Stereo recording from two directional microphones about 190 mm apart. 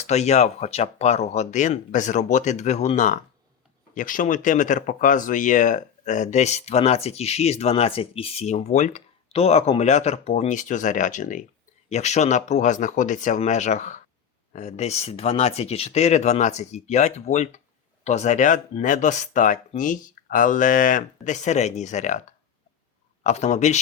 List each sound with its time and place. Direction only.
0.1 s speech: 35° left (ahead or behind)
23.2 s speech: 35° left (ahead or behind)